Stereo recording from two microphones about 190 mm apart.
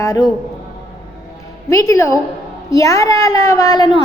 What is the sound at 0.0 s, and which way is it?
Speech, 20° left (ahead or behind).